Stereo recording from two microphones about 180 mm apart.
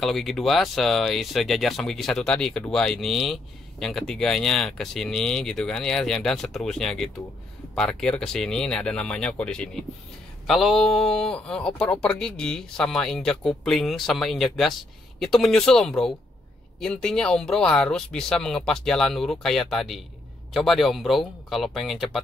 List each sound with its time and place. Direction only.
0.0 s speech: centre (ahead or behind)